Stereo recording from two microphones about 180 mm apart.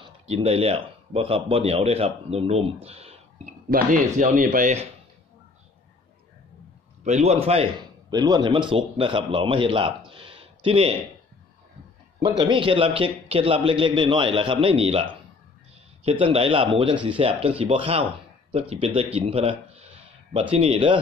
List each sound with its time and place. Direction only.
0.3 s speech: 35° right (ahead or behind)
3.7 s speech: 45° right (ahead or behind)
7.1 s speech: 40° right (ahead or behind)
8.1 s a man's voice: 20° right (ahead or behind)
12.2 s a man's voice: 25° right (ahead or behind)